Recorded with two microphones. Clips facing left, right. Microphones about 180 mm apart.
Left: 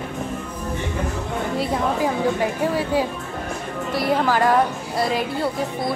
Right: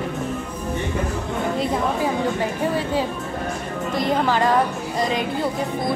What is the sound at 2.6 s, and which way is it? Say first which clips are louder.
A woman's voice: even; 10° left (ahead or behind).